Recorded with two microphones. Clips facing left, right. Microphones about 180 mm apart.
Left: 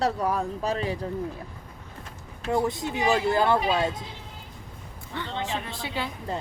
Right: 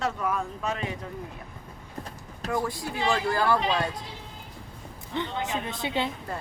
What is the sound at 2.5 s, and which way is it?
Speech, 25° left (ahead or behind).